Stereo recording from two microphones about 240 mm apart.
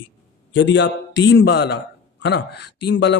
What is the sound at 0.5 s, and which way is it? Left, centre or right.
A man's voice, left.